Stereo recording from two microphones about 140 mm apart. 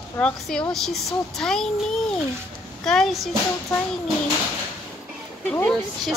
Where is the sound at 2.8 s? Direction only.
Centre (ahead or behind).